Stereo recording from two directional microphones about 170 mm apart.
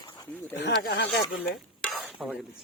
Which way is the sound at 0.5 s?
90° left.